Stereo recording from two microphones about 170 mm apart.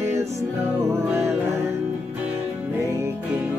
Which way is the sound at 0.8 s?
15° right (ahead or behind).